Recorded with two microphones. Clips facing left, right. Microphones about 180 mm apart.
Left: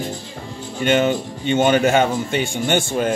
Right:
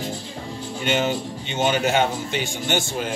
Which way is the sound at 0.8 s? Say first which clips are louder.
Left 6 dB; 55° left (ahead or behind).